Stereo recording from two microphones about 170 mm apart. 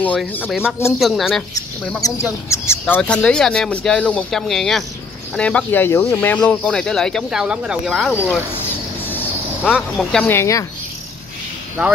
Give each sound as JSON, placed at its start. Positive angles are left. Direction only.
{"t": 0.0, "sound": "speech", "side_deg": 10}
{"t": 0.5, "sound": "speech", "side_deg": -5}
{"t": 2.0, "sound": "speech", "side_deg": 20}
{"t": 9.0, "sound": "a sound", "side_deg": 10}
{"t": 9.7, "sound": "speech", "side_deg": 0}
{"t": 10.2, "sound": "speech", "side_deg": 15}